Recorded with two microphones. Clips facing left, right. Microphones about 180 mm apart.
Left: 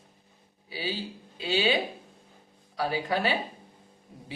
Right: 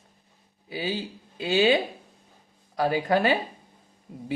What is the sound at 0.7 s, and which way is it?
A man's voice, 50° right (ahead or behind).